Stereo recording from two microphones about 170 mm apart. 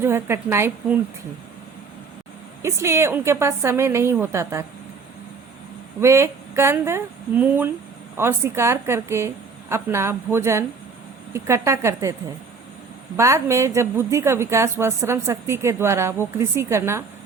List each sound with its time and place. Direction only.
0.0 s a woman's voice: 15° right (ahead or behind)
2.6 s a woman's voice: 15° right (ahead or behind)
6.0 s a woman's voice: 15° right (ahead or behind)
13.1 s a woman's voice: 15° right (ahead or behind)